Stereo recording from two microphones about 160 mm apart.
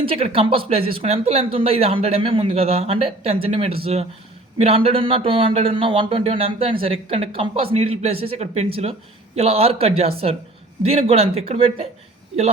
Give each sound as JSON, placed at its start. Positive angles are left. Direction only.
{"t": 0.0, "sound": "speech", "side_deg": -35}